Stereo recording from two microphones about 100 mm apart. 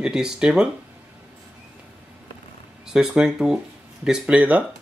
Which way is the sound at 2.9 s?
5° right (ahead or behind).